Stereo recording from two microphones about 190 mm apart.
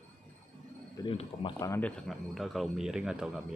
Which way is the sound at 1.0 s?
25° left (ahead or behind).